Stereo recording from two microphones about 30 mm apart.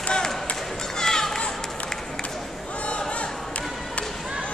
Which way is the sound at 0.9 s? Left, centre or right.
Left.